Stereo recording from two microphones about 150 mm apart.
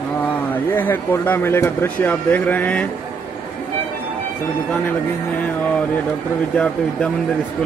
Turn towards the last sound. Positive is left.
turn(degrees=10)  # may be behind; listen again after turning